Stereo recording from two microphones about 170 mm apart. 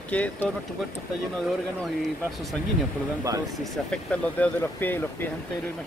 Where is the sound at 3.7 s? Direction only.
10° left (ahead or behind).